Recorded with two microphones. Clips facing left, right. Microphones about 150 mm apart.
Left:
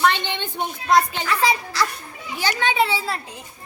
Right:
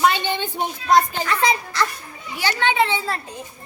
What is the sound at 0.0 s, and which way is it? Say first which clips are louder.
A woman's voice: right 2 dB; 10° right (ahead or behind).